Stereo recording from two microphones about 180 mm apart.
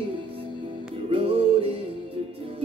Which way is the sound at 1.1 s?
30° right (ahead or behind).